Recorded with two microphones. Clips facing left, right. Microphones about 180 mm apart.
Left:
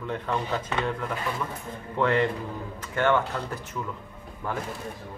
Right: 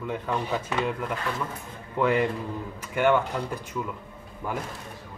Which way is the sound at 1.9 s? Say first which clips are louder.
Even; 10° right (ahead or behind).